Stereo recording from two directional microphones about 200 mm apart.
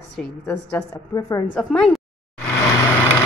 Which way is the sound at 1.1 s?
15° left (ahead or behind).